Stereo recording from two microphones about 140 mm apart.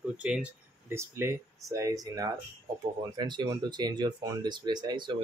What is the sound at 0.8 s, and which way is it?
Speech, 20° right (ahead or behind).